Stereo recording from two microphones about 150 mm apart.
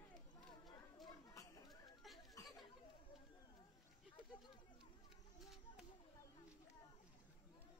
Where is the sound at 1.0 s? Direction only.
25° left (ahead or behind).